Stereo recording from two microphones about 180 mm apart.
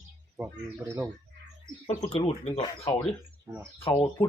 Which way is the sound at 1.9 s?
35° left (ahead or behind).